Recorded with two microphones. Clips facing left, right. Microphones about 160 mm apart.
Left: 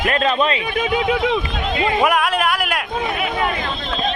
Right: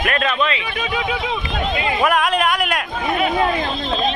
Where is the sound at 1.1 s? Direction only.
55° left (ahead or behind).